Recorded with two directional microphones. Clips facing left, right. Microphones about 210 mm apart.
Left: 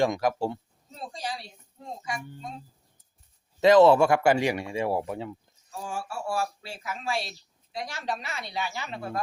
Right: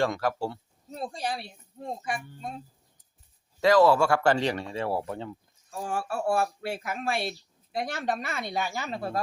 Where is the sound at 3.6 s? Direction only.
20° left (ahead or behind).